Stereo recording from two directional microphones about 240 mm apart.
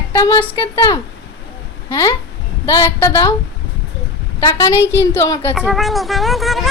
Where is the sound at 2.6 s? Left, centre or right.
Centre.